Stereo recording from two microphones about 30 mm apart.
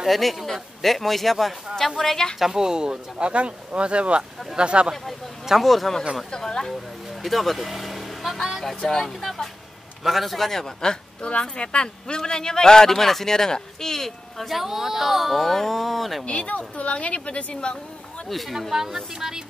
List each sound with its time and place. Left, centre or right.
0.0 s a man's voice: centre
2.5 s speech: right
3.2 s speech: right
5.6 s a man's voice: centre
6.3 s speech: left
7.2 s vehicle: centre
9.0 s a man's voice: centre
11.2 s speech: left; by 14.5 s centre
14.5 s speech: centre
15.3 s a man's voice: centre
16.3 s a woman's voice: left
18.5 s speech: centre